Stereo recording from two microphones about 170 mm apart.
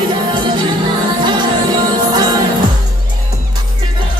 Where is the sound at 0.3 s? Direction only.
25° right (ahead or behind).